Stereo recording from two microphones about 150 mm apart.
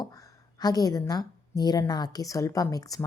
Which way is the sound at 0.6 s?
25° left (ahead or behind).